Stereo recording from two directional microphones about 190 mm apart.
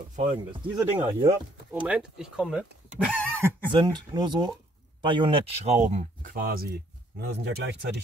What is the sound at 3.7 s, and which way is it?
Speech, 25° right (ahead or behind).